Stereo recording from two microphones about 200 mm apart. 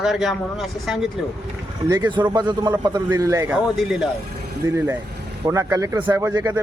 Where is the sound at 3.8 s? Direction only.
5° right (ahead or behind).